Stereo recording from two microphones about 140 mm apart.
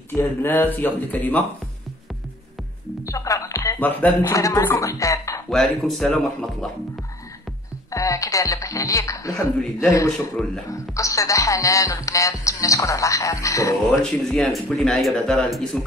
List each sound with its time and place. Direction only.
0.1 s speech: 15° left (ahead or behind)
3.1 s music: 20° left (ahead or behind)
3.8 s speech: 10° left (ahead or behind)
4.3 s speech: 25° left (ahead or behind)
5.5 s speech: centre (ahead or behind)
7.9 s speech: 25° left (ahead or behind)
10.0 s speech: 5° left (ahead or behind)
10.7 s speech: 20° left (ahead or behind)
13.8 s speech: centre (ahead or behind)